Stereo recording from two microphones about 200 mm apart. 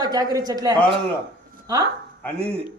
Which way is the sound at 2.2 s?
5° left (ahead or behind).